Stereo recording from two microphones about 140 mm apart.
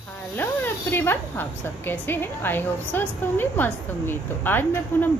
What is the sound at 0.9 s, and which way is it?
A woman's voice, 15° left (ahead or behind).